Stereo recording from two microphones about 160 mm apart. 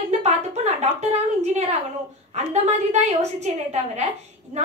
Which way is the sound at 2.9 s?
45° right (ahead or behind).